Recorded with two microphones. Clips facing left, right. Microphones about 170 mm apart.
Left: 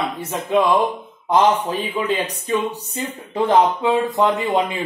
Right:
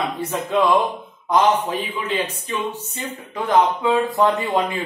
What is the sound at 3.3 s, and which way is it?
Speech, 30° left (ahead or behind).